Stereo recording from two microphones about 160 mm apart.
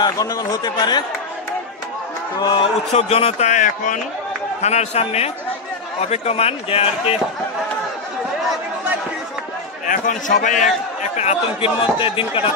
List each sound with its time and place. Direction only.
0.0 s speech: 20° left (ahead or behind)
2.3 s speech: 25° left (ahead or behind)
2.9 s a man's voice: 40° left (ahead or behind)
9.8 s a man's voice: 55° left (ahead or behind)
11.1 s speech: 40° left (ahead or behind)